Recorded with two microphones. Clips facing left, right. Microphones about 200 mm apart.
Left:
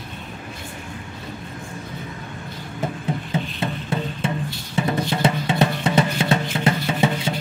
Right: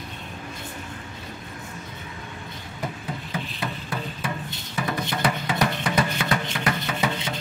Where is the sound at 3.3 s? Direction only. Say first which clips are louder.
Left 5 dB; 25° left (ahead or behind).